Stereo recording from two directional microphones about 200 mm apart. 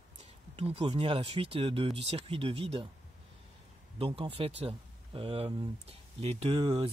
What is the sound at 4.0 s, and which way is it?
Speech, 30° right (ahead or behind).